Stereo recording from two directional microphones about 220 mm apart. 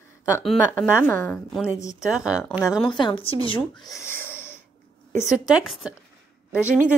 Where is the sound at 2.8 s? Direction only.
20° left (ahead or behind).